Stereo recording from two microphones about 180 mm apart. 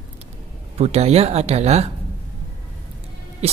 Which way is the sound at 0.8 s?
35° right (ahead or behind).